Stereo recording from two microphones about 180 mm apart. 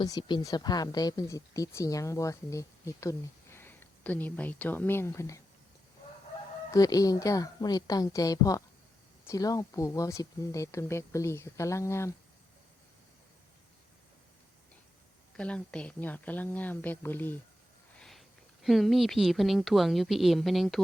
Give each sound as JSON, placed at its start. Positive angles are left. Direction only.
{"t": 0.0, "sound": "speech", "side_deg": 25}
{"t": 6.7, "sound": "a woman's voice", "side_deg": 20}
{"t": 15.4, "sound": "speech", "side_deg": 5}